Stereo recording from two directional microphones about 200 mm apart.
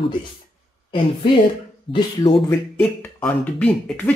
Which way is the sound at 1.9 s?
25° left (ahead or behind).